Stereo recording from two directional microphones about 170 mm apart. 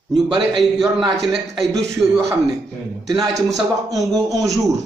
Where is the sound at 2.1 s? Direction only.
15° right (ahead or behind).